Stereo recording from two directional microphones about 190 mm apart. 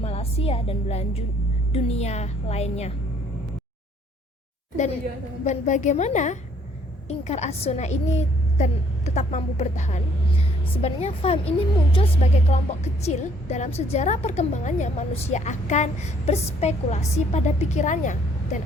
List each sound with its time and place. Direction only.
0.0 s a woman's voice: 30° left (ahead or behind)
5.5 s a woman's voice: 40° left (ahead or behind)